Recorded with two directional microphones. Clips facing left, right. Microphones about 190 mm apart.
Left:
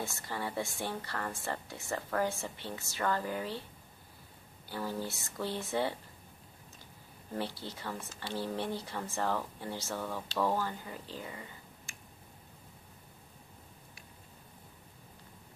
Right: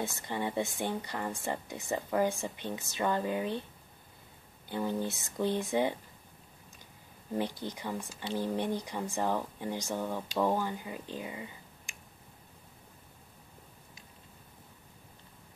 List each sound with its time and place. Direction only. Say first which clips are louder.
0.0 s speech: right 4 dB; 20° right (ahead or behind)
4.6 s speech: right 4 dB; 20° right (ahead or behind)
7.3 s speech: right 4 dB; 15° right (ahead or behind)